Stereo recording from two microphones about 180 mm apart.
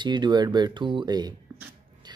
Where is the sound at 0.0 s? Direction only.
25° right (ahead or behind).